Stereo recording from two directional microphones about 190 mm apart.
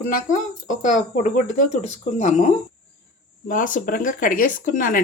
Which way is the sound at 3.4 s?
45° left (ahead or behind).